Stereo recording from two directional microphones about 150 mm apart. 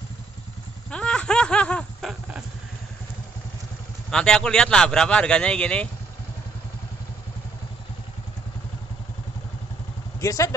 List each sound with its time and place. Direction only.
0.8 s a sound: 5° left (ahead or behind)
4.1 s a man's voice: 5° left (ahead or behind)
10.2 s speech: 20° left (ahead or behind)